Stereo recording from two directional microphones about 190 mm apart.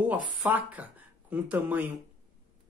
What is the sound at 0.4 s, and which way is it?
A man's voice, 10° right (ahead or behind).